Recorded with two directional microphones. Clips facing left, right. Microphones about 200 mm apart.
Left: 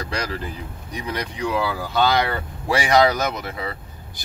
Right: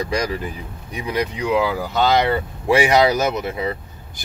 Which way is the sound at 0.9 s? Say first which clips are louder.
Right 5 dB; 20° right (ahead or behind).